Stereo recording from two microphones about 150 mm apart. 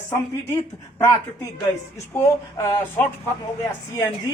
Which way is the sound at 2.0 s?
20° left (ahead or behind).